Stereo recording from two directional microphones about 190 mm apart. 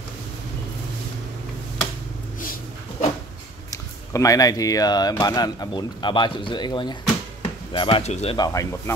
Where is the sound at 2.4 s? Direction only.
45° left (ahead or behind).